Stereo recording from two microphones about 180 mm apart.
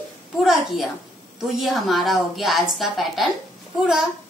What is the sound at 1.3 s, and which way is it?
A woman's voice, centre (ahead or behind).